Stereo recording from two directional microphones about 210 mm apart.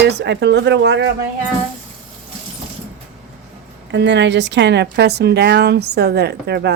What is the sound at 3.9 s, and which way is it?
Speech, 55° right (ahead or behind).